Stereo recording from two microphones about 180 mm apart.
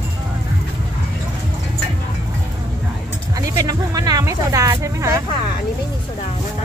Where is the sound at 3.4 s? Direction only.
20° right (ahead or behind).